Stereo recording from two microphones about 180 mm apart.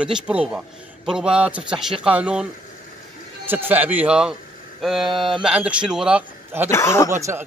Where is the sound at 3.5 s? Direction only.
10° right (ahead or behind).